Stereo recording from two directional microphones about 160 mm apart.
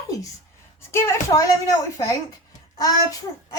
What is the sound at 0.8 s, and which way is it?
A child's voice, 15° left (ahead or behind).